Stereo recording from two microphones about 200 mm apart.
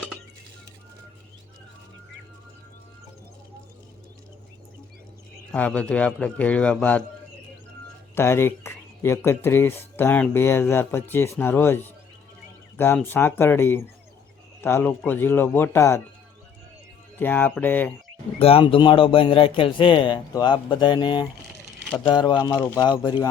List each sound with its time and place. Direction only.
5.5 s speech: 5° left (ahead or behind)
8.1 s speech: 10° left (ahead or behind)
17.2 s speech: 10° left (ahead or behind)
18.3 s speech: 30° left (ahead or behind)